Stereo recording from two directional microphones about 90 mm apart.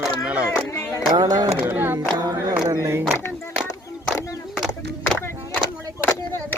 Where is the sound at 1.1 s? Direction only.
45° right (ahead or behind).